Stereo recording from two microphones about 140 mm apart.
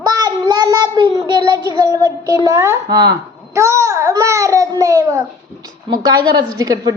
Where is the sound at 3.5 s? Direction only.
20° right (ahead or behind).